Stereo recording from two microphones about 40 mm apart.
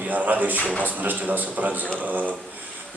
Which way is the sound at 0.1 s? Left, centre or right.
Right.